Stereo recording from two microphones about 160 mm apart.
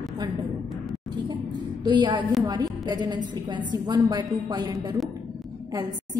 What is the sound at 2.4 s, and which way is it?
A woman's voice, 25° right (ahead or behind).